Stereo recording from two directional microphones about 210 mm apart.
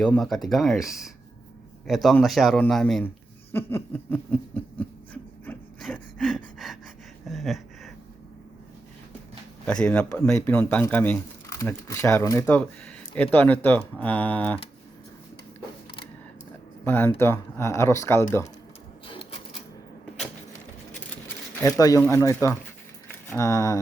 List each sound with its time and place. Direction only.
0.0 s a man's voice: 5° left (ahead or behind)
3.5 s a sound: 10° left (ahead or behind)
9.6 s speech: 5° left (ahead or behind)
16.8 s speech: 10° left (ahead or behind)
19.0 s typewriter: 25° left (ahead or behind)
21.6 s speech: 15° left (ahead or behind)